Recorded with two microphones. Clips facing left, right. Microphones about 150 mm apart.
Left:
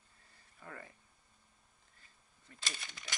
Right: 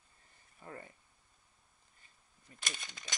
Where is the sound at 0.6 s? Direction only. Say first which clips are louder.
Right 2 dB; 30° right (ahead or behind).